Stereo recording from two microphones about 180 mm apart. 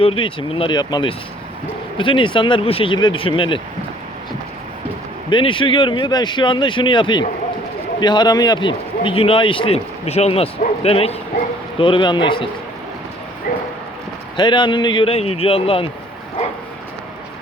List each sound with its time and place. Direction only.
0.0 s speech: 30° left (ahead or behind)
5.3 s a man's voice: 30° left (ahead or behind)
13.5 s dog: 55° left (ahead or behind)
14.3 s a man's voice: 25° left (ahead or behind)